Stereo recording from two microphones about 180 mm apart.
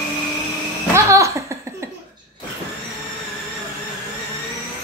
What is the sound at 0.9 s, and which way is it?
Laughter, 15° right (ahead or behind).